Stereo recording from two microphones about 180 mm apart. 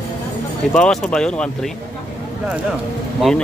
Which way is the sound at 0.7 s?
5° left (ahead or behind).